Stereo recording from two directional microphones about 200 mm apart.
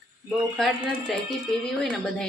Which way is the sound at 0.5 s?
Centre (ahead or behind).